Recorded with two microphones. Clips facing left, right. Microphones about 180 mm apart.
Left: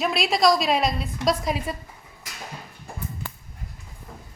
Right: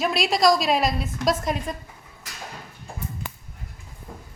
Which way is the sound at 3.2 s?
15° right (ahead or behind).